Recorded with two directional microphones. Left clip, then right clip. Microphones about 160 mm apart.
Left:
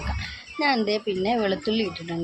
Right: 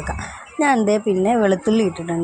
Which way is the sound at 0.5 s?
30° right (ahead or behind).